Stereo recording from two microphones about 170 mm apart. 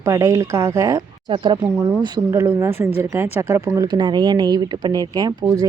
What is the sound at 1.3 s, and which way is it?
Speech, 30° right (ahead or behind).